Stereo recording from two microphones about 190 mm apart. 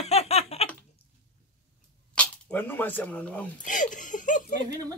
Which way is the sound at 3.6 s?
40° left (ahead or behind).